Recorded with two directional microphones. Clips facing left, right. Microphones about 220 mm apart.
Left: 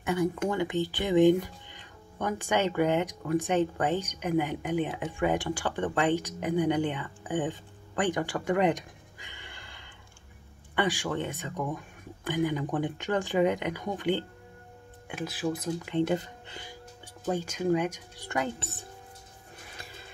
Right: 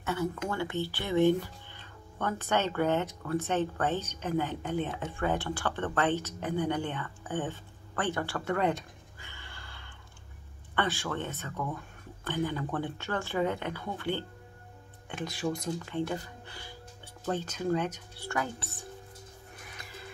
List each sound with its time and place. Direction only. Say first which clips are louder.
0.0 s speech: left 5 dB; 15° left (ahead or behind)
15.0 s speech: left 2 dB; 5° left (ahead or behind)
15.8 s speech: left 6 dB; 20° left (ahead or behind)
17.2 s speech: left 3 dB; 10° left (ahead or behind)
19.6 s music: left 3 dB; 30° left (ahead or behind)